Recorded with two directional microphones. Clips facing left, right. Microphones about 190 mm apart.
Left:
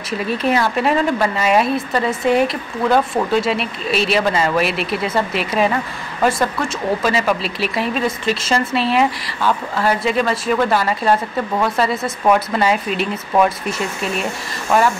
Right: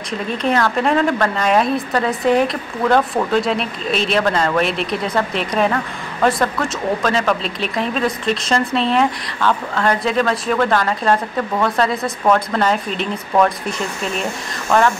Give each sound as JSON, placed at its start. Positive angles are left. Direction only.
{"t": 0.3, "sound": "speech", "side_deg": 5}
{"t": 14.7, "sound": "speech", "side_deg": 10}